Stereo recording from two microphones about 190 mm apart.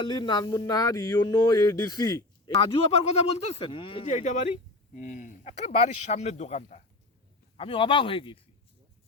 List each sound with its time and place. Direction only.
0.0 s music: 20° left (ahead or behind)
2.9 s speech: 35° left (ahead or behind)
7.5 s music: 30° left (ahead or behind)